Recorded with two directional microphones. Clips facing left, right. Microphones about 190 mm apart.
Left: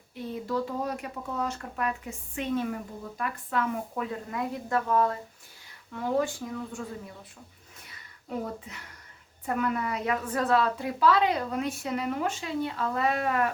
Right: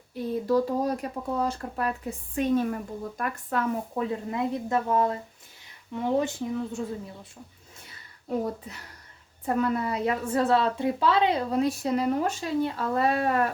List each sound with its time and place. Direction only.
0.1 s a woman's voice: 40° right (ahead or behind)
3.9 s speech: 25° right (ahead or behind)
9.5 s a woman's voice: 35° right (ahead or behind)